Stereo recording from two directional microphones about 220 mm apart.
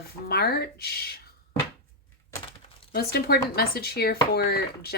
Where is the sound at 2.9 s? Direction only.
45° left (ahead or behind).